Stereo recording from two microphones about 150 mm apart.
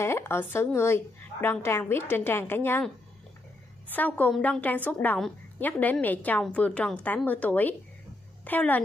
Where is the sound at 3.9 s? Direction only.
10° left (ahead or behind).